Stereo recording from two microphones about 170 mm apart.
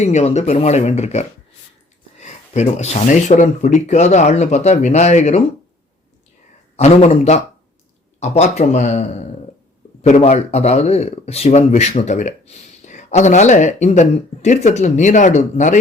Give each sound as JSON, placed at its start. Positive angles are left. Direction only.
{"t": 0.0, "sound": "speech", "side_deg": 40}
{"t": 6.7, "sound": "speech", "side_deg": 40}